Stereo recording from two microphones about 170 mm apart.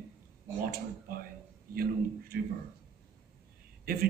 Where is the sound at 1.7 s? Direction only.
60° right (ahead or behind).